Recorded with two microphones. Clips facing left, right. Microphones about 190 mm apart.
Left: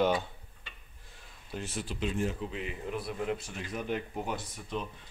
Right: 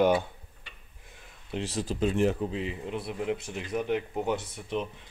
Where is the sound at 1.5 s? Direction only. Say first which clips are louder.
Right 6 dB; 35° right (ahead or behind).